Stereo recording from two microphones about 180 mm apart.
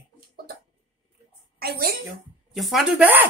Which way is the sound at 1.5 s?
60° right (ahead or behind).